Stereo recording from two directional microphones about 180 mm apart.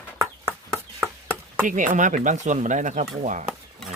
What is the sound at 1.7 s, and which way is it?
Speech, 45° right (ahead or behind).